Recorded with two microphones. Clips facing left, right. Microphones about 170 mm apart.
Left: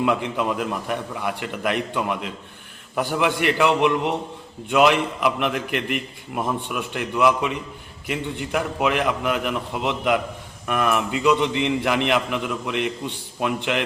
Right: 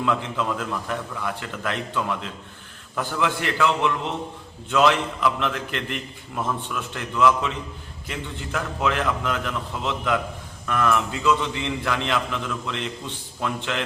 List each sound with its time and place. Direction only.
0.0 s a man's voice: 15° left (ahead or behind)